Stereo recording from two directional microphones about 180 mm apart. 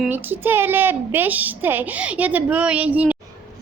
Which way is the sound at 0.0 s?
10° right (ahead or behind).